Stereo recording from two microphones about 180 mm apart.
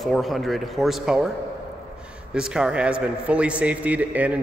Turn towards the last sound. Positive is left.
turn(degrees=-10)  # may be behind; listen again after turning